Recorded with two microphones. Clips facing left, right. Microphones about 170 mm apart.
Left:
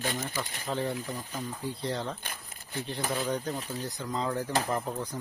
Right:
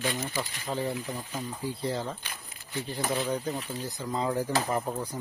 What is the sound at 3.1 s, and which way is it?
Speech, centre (ahead or behind).